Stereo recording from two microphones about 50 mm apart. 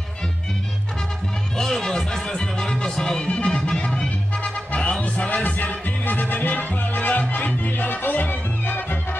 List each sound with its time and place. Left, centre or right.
1.6 s music: centre; by 8.8 s left